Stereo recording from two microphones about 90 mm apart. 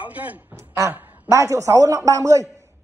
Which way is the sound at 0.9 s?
20° right (ahead or behind).